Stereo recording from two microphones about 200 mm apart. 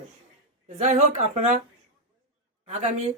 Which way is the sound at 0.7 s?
35° right (ahead or behind).